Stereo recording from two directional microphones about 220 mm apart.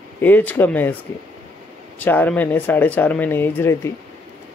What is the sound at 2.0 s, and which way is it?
Speech, 10° left (ahead or behind).